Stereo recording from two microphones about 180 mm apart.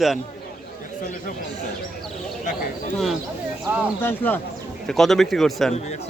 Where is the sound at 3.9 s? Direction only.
10° left (ahead or behind).